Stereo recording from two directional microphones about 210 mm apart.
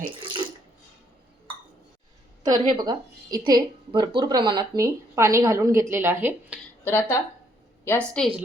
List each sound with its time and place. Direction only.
0.2 s water: 25° right (ahead or behind)
2.4 s a woman's voice: 20° right (ahead or behind)
6.8 s a woman's voice: 10° left (ahead or behind)